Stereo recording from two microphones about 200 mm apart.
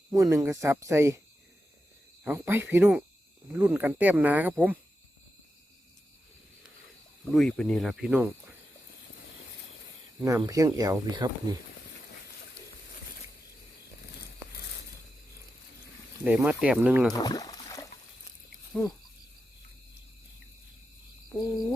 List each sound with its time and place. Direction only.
0.1 s speech: 15° right (ahead or behind)
2.2 s speech: 10° right (ahead or behind)
7.3 s speech: centre (ahead or behind)
10.2 s speech: 15° right (ahead or behind)
16.2 s speech: 5° right (ahead or behind)
17.1 s a sound: 20° left (ahead or behind)
18.7 s speech: centre (ahead or behind)